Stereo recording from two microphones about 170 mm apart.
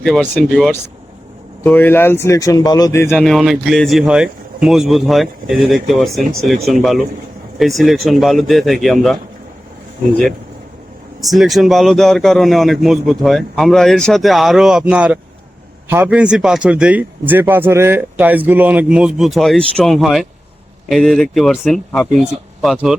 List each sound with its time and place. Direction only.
0.0 s a man's voice: 5° left (ahead or behind)
3.2 s a man's voice: centre (ahead or behind)
11.2 s a man's voice: centre (ahead or behind)